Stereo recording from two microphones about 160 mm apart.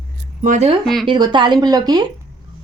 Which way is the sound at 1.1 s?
30° right (ahead or behind).